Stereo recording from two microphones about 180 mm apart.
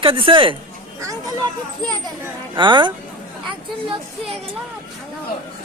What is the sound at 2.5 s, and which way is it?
Speech, 25° right (ahead or behind).